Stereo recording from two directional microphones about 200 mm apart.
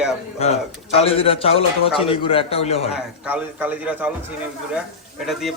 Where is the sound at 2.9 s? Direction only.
5° right (ahead or behind).